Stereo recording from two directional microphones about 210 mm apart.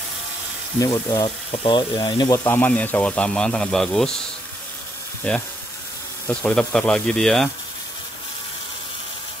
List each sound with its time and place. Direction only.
0.7 s speech: 15° left (ahead or behind)
5.3 s speech: 5° left (ahead or behind)